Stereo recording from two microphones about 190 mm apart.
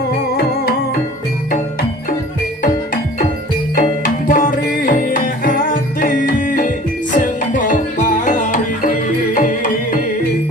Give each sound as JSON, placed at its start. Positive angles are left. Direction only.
{"t": 3.8, "sound": "music", "side_deg": 45}